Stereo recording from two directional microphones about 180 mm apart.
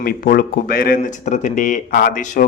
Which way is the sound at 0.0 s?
55° left (ahead or behind).